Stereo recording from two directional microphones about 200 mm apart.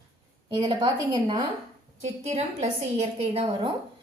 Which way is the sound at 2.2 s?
35° right (ahead or behind).